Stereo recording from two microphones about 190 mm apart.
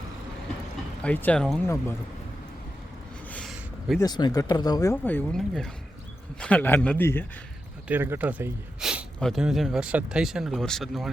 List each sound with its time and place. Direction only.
1.0 s a man's voice: 10° left (ahead or behind)
3.3 s a sound: centre (ahead or behind)
4.0 s a man's voice: 20° left (ahead or behind)
7.9 s speech: 10° right (ahead or behind)